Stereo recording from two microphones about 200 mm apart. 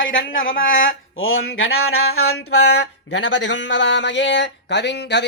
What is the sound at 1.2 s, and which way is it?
Speech, 90° left.